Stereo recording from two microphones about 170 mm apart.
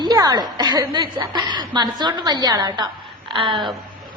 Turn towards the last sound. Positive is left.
turn(degrees=-30)  # may be behind; listen again after turning